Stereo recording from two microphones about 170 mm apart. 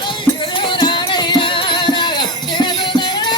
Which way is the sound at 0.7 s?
25° left (ahead or behind).